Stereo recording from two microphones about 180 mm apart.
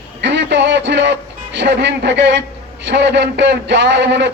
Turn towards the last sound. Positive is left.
turn(degrees=-75)  # may be behind; listen again after turning